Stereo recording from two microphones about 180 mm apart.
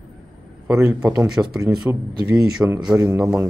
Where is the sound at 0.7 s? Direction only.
5° right (ahead or behind).